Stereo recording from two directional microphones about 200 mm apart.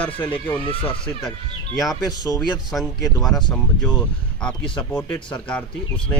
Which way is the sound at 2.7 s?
Centre (ahead or behind).